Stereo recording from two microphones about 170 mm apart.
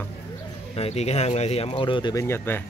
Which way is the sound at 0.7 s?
35° left (ahead or behind).